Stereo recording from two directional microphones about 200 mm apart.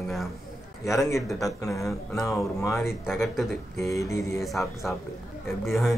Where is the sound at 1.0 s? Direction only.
15° left (ahead or behind).